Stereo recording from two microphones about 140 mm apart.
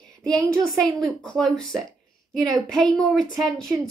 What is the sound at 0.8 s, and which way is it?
A woman's voice, 5° left (ahead or behind).